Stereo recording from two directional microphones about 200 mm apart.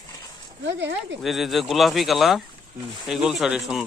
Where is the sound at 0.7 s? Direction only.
60° right (ahead or behind).